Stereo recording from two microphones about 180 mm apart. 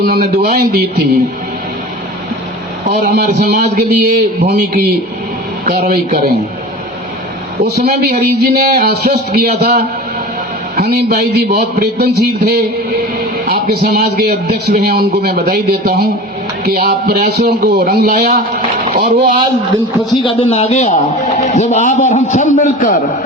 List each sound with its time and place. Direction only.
0.0 s a man's voice: 55° right (ahead or behind)
3.0 s a man's voice: 55° right (ahead or behind)
7.6 s a man's voice: 55° right (ahead or behind)
18.9 s a man's voice: 45° right (ahead or behind)
20.1 s a man's voice: 20° left (ahead or behind)
20.4 s a man's voice: 35° left (ahead or behind)